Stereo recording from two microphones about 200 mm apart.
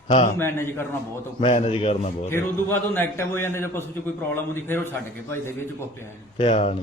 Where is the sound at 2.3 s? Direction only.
10° left (ahead or behind).